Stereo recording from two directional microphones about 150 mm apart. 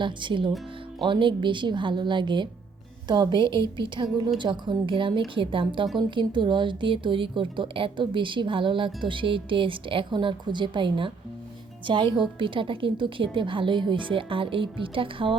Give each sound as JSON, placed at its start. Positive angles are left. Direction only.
{"t": 0.0, "sound": "a woman's voice", "side_deg": -30}